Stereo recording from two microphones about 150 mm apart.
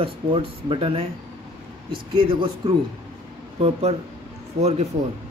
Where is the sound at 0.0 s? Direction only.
35° right (ahead or behind).